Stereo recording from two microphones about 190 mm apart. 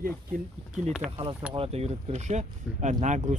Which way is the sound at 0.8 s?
Centre (ahead or behind).